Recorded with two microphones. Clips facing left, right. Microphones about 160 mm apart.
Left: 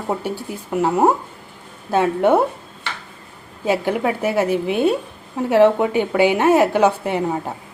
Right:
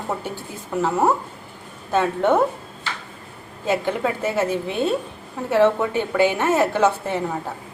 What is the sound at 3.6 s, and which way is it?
A woman's voice, 10° left (ahead or behind).